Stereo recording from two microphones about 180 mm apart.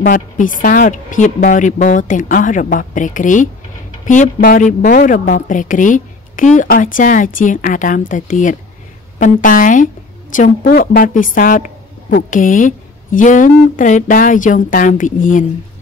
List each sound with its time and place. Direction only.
0.0 s a woman's voice: 50° left (ahead or behind)